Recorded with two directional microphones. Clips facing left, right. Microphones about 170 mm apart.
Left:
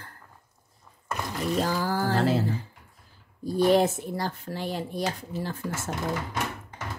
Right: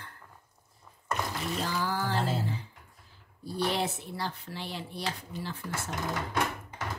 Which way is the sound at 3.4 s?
45° left (ahead or behind).